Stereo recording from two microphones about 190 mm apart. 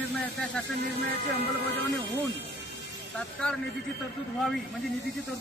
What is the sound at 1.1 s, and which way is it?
Speech, 55° right (ahead or behind).